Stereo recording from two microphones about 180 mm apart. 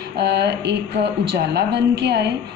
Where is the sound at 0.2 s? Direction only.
70° right (ahead or behind).